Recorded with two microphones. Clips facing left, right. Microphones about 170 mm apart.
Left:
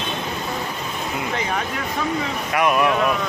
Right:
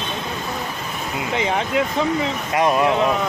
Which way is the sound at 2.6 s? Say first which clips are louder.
Right 1 dB; 25° right (ahead or behind).